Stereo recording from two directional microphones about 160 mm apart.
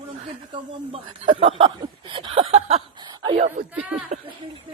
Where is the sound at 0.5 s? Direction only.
30° right (ahead or behind).